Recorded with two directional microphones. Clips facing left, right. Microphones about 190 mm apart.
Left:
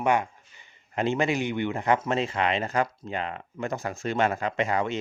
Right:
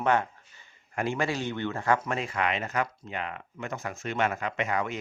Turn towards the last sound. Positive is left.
turn(degrees=30)  # may be behind; listen again after turning